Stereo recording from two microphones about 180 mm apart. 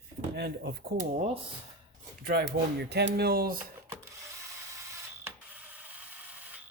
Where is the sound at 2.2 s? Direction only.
55° right (ahead or behind).